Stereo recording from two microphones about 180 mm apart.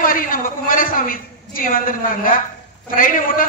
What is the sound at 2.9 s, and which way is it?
Speech, 50° left (ahead or behind).